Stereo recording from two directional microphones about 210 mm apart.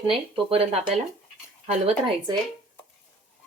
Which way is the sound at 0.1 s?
25° right (ahead or behind).